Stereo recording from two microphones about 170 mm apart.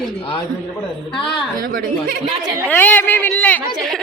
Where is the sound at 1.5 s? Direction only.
55° right (ahead or behind).